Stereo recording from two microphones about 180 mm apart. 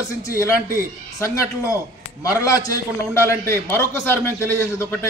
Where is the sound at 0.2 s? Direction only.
15° left (ahead or behind).